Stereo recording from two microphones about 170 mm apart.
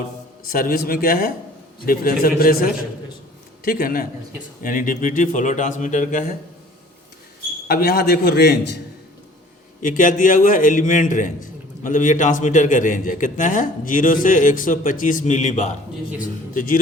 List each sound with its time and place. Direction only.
0.4 s a man's voice: 60° left (ahead or behind)
7.7 s a man's voice: 65° left (ahead or behind)
9.8 s a man's voice: 50° left (ahead or behind)